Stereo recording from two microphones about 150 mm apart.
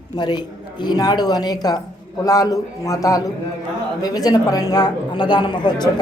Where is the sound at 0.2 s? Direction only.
30° left (ahead or behind).